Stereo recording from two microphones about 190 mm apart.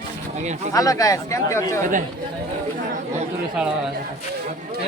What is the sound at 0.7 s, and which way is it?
Speech, 20° left (ahead or behind).